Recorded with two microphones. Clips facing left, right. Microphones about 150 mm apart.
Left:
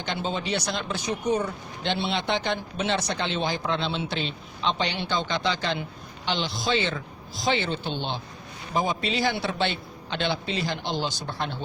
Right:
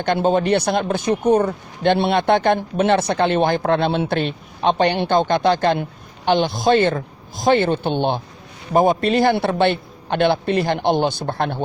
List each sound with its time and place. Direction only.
0.0 s a man's voice: 55° right (ahead or behind)